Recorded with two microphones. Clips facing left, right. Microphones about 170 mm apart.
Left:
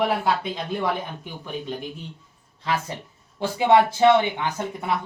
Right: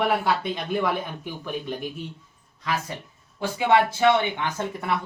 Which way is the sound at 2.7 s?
30° left (ahead or behind).